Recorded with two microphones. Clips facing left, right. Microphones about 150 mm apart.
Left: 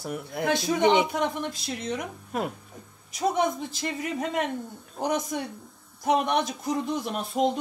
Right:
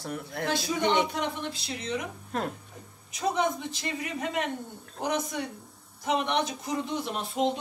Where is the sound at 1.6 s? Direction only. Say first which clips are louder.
Left 2 dB; 50° left (ahead or behind).